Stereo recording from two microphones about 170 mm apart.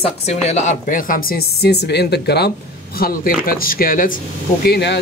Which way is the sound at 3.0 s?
55° left (ahead or behind).